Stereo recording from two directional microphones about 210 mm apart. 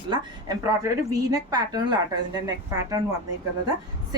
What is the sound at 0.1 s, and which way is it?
A woman's voice, 15° right (ahead or behind).